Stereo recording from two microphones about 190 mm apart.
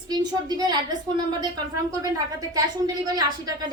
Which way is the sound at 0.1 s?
20° right (ahead or behind).